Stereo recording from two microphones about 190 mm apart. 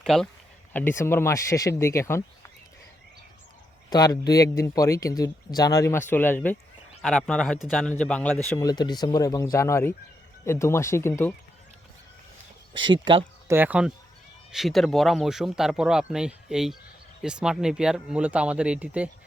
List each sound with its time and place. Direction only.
0.0 s speech: centre (ahead or behind)
3.8 s speech: 20° left (ahead or behind)
8.5 s speech: 20° left (ahead or behind)
12.7 s speech: 25° right (ahead or behind)
13.5 s speech: 10° right (ahead or behind)